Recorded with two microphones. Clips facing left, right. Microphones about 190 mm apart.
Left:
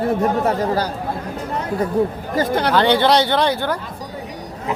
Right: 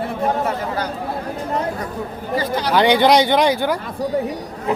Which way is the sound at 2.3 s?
55° left (ahead or behind).